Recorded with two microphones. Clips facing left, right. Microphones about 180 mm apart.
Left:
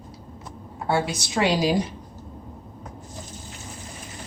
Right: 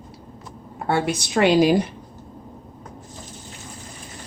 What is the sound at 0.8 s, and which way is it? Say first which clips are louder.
A woman's voice: right 2 dB; 60° right (ahead or behind).